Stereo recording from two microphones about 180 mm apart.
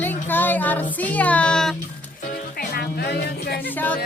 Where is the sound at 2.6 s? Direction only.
60° left (ahead or behind).